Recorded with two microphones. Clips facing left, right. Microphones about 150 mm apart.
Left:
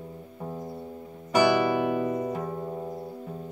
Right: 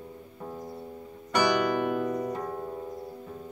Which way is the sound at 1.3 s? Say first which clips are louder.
Left 3 dB; 5° left (ahead or behind).